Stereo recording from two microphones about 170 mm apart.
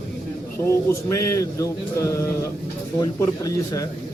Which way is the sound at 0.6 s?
15° left (ahead or behind).